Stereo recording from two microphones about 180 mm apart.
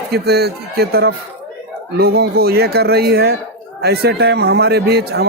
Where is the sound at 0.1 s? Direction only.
60° right (ahead or behind).